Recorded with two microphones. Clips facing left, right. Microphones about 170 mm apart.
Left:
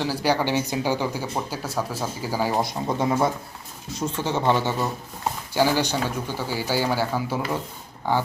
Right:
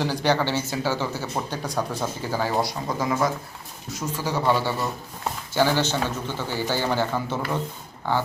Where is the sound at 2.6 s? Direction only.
25° left (ahead or behind).